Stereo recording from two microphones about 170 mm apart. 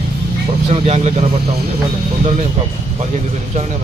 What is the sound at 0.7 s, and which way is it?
Speech, 40° right (ahead or behind).